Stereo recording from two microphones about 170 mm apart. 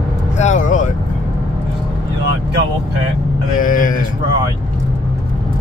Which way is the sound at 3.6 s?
50° left (ahead or behind).